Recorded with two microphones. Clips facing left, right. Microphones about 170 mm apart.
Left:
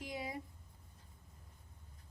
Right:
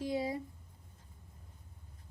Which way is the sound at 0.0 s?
30° right (ahead or behind).